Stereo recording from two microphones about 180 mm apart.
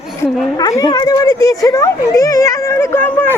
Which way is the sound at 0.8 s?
25° left (ahead or behind).